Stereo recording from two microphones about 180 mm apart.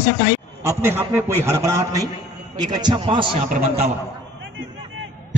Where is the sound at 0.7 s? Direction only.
15° right (ahead or behind); by 3.9 s 35° right (ahead or behind).